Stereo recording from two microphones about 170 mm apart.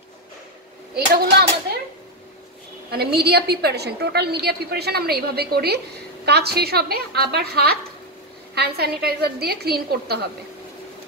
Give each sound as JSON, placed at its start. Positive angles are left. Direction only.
{"t": 0.9, "sound": "a woman's voice", "side_deg": -65}
{"t": 2.9, "sound": "a woman's voice", "side_deg": -70}